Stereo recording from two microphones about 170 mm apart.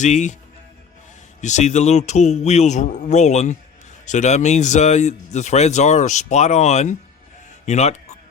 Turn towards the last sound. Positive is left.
turn(degrees=40)  # may be behind; listen again after turning